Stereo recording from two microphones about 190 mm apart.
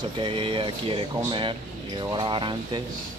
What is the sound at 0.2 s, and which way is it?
Speech, 25° right (ahead or behind).